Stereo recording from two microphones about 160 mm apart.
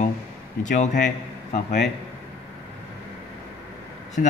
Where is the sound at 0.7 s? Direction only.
50° left (ahead or behind).